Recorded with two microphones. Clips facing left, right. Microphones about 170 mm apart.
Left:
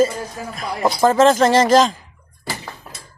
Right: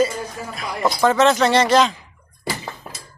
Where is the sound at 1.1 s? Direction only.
45° left (ahead or behind).